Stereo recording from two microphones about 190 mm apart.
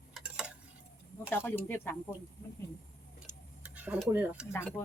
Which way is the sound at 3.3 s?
10° right (ahead or behind).